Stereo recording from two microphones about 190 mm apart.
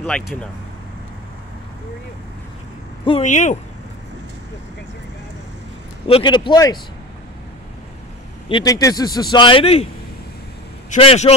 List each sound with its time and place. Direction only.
0.0 s speech: 5° left (ahead or behind)
3.1 s speech: 35° left (ahead or behind)
6.0 s a man's voice: 25° left (ahead or behind)
8.5 s a man's voice: 25° left (ahead or behind)
11.0 s speech: 30° left (ahead or behind)